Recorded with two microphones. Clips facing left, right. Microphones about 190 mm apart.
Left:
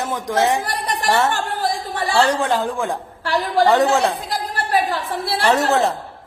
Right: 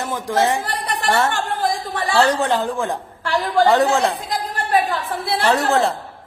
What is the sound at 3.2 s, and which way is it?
Speech, 35° left (ahead or behind).